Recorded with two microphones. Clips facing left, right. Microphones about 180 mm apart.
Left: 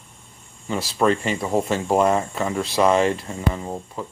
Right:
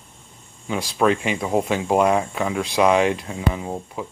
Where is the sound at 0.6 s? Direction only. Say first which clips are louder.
Even; centre (ahead or behind).